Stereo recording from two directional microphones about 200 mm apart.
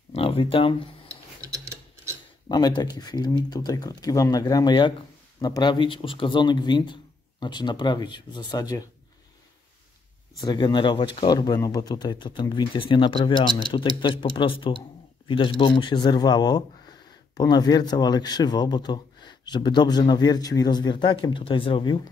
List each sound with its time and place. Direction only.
0.1 s a sound: 30° left (ahead or behind)
1.0 s filing: 15° right (ahead or behind)
2.4 s a man's voice: 20° left (ahead or behind)
10.4 s a man's voice: 20° left (ahead or behind)